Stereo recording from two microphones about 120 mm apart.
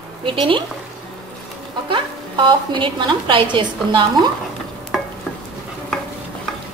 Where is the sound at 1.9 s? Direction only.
45° right (ahead or behind).